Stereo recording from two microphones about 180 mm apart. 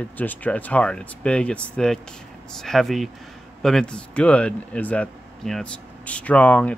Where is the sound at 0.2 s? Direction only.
10° left (ahead or behind).